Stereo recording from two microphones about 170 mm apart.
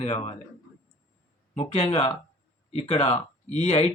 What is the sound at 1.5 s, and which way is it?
Speech, 35° left (ahead or behind).